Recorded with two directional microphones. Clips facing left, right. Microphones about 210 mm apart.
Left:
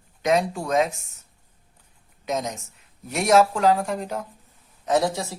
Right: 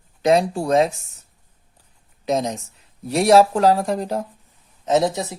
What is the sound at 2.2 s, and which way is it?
Speech, 35° right (ahead or behind).